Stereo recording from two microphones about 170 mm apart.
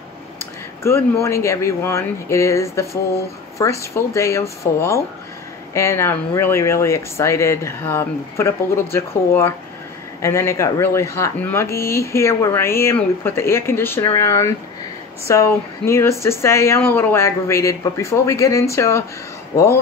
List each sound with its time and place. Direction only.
1.2 s speech: 15° left (ahead or behind)